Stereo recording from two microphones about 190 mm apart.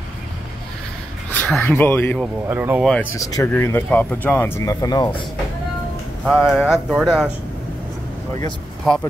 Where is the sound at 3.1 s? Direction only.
15° left (ahead or behind).